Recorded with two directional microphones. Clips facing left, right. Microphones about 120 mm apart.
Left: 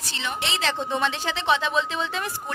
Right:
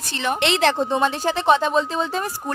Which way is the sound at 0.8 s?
35° right (ahead or behind).